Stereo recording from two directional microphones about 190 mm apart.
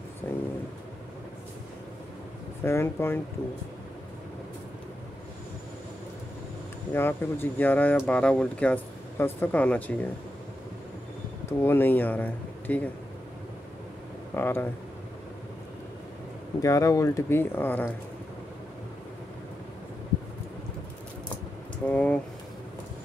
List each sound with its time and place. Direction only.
0.2 s a sound: 10° left (ahead or behind)
2.6 s speech: 15° left (ahead or behind)
6.9 s speech: 10° left (ahead or behind)
11.4 s speech: 10° left (ahead or behind)
14.3 s speech: 10° left (ahead or behind)
16.5 s speech: 15° left (ahead or behind)
21.8 s speech: 5° left (ahead or behind)